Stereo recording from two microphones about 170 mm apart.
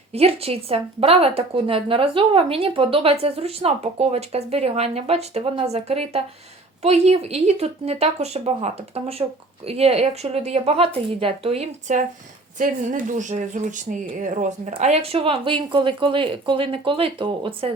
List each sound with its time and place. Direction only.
0.1 s speech: 35° right (ahead or behind)